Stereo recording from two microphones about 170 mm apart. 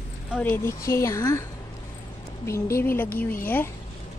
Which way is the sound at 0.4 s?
10° left (ahead or behind).